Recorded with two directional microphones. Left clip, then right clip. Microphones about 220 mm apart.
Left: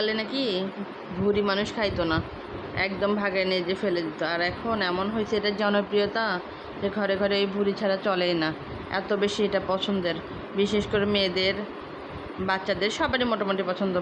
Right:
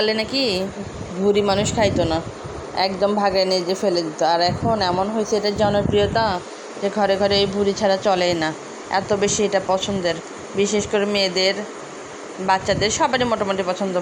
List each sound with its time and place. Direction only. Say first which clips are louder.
0.0 s speech: right 7 dB; 15° right (ahead or behind)
0.3 s speech: right 7 dB; 20° left (ahead or behind)
1.3 s a woman's voice: right 7 dB; 15° right (ahead or behind)